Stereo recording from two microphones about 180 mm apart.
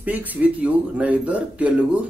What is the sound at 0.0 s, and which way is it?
Speech, 10° right (ahead or behind).